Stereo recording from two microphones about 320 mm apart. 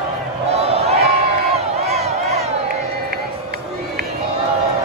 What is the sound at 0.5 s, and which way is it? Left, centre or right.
Crowd, centre.